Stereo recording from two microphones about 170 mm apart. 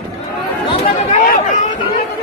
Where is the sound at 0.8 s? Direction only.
45° left (ahead or behind).